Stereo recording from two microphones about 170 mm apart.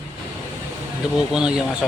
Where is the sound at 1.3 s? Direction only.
5° right (ahead or behind).